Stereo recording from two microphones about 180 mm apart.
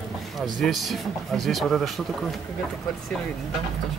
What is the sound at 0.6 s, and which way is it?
Speech, centre (ahead or behind).